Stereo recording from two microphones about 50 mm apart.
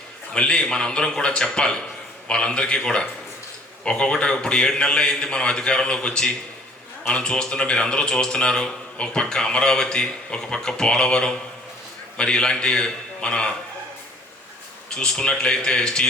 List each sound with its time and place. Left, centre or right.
0.3 s a man's voice: centre
14.9 s a man's voice: centre